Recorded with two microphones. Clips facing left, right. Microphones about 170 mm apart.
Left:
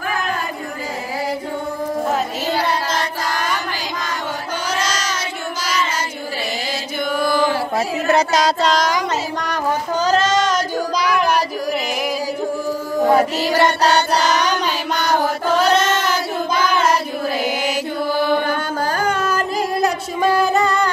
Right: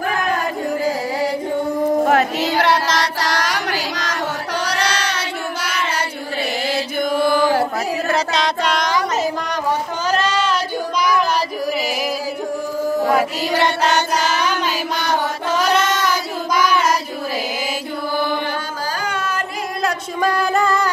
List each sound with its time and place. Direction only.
2.0 s child singing: 70° right (ahead or behind)
4.6 s child singing: 65° right (ahead or behind)
8.6 s child singing: 40° left (ahead or behind)
13.6 s child singing: 40° left (ahead or behind)
18.9 s a sound: 45° left (ahead or behind)
20.2 s music: centre (ahead or behind)